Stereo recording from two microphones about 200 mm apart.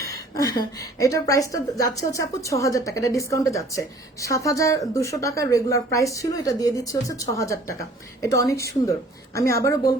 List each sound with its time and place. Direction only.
0.0 s a woman's voice: 15° left (ahead or behind)